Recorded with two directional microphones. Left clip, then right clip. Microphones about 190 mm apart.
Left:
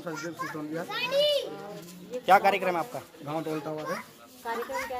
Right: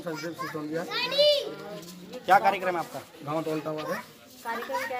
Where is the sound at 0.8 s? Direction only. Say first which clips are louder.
Right 3 dB; 40° left (ahead or behind).